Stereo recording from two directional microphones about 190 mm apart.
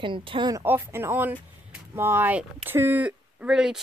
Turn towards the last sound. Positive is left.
turn(degrees=-5)  # may be behind; listen again after turning